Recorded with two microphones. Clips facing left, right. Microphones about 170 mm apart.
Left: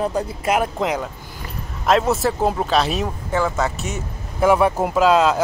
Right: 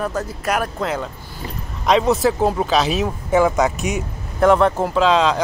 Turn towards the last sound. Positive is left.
turn(degrees=5)  # may be behind; listen again after turning